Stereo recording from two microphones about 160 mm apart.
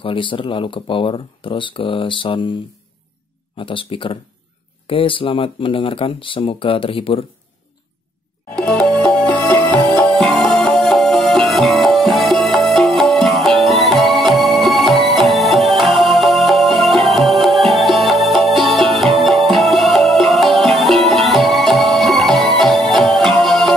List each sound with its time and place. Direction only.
0.0 s speech: 30° left (ahead or behind)
3.5 s speech: 30° left (ahead or behind)
8.5 s music: 5° left (ahead or behind)